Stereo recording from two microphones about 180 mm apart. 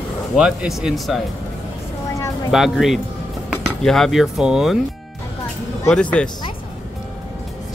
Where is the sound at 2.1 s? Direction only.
20° left (ahead or behind).